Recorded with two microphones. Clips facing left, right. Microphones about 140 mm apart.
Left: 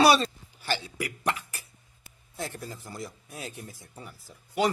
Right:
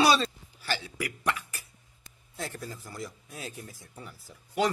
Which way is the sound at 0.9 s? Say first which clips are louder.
Left 1 dB; 25° left (ahead or behind).